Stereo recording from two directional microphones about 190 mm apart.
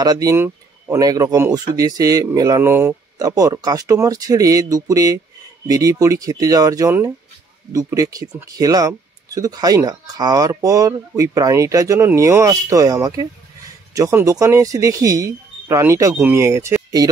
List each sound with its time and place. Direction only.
0.0 s speech: 20° right (ahead or behind)